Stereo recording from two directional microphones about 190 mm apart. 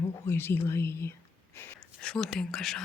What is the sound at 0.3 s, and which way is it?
Speech, 10° left (ahead or behind).